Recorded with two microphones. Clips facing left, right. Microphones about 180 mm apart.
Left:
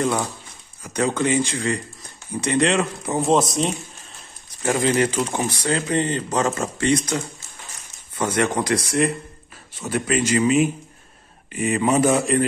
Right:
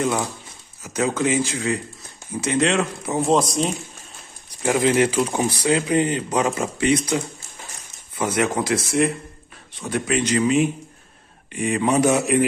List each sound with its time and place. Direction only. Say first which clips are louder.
0.8 s speech: even; 5° right (ahead or behind)